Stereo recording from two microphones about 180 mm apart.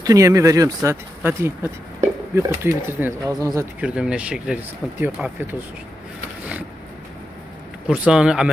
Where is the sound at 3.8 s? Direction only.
5° right (ahead or behind).